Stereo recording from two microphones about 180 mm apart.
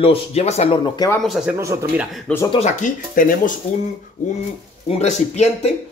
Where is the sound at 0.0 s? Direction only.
35° left (ahead or behind).